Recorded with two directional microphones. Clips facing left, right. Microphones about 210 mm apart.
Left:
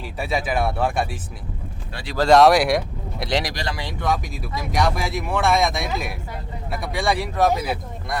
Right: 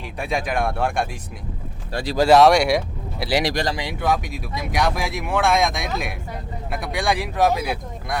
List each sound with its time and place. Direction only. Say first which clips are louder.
0.2 s speech: even; 5° left (ahead or behind)
1.9 s speech: right 9 dB; 40° right (ahead or behind)
2.1 s speech: even; 5° right (ahead or behind)